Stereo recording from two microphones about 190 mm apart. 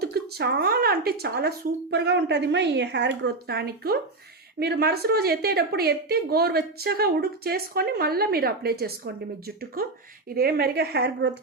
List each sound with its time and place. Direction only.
0.0 s a woman's voice: 60° right (ahead or behind)
10.2 s a woman's voice: 55° right (ahead or behind)